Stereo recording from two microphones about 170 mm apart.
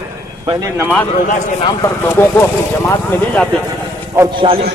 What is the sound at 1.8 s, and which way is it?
Speech, 15° left (ahead or behind).